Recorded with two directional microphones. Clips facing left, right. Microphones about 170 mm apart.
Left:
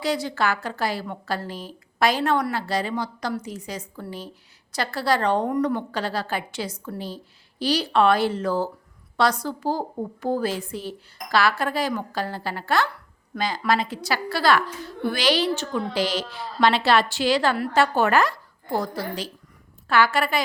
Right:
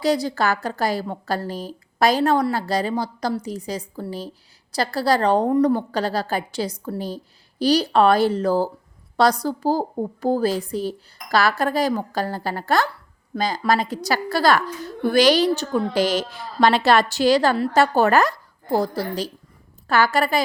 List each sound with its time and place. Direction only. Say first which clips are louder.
0.0 s a woman's voice: right 4 dB; 40° right (ahead or behind)